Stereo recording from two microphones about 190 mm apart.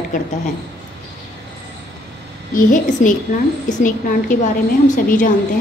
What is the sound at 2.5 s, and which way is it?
A woman's voice, 45° left (ahead or behind).